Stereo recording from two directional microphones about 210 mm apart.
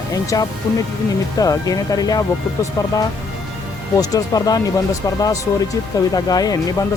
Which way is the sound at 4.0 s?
15° left (ahead or behind).